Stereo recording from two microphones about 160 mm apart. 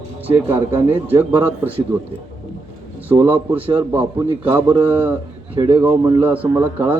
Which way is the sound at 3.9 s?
10° right (ahead or behind).